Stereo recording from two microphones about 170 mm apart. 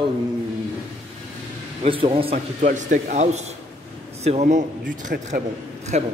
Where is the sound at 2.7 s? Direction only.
45° right (ahead or behind).